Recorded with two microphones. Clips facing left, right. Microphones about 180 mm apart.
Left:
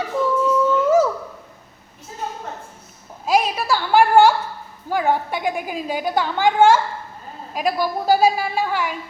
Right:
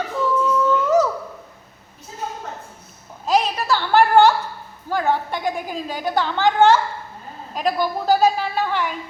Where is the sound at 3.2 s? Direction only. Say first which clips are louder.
Even; 10° left (ahead or behind).